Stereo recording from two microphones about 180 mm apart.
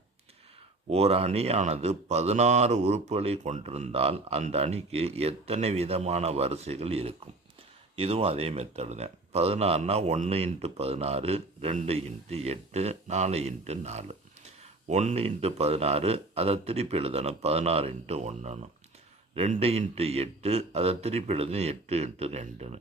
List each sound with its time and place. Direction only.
0.9 s speech: 35° right (ahead or behind)